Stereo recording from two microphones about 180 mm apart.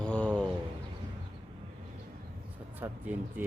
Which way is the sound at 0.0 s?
5° left (ahead or behind).